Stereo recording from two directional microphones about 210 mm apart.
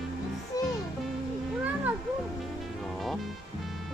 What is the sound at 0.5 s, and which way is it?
Music, 15° left (ahead or behind).